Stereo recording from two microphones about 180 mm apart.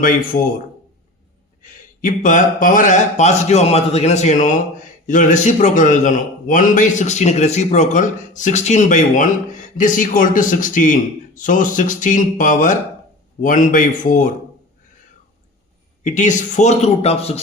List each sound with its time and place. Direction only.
0.3 s speech: 50° left (ahead or behind)
1.6 s speech: 45° left (ahead or behind)
16.0 s speech: 45° left (ahead or behind)